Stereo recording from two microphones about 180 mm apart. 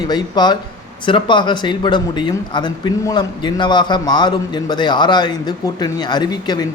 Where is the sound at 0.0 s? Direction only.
25° left (ahead or behind).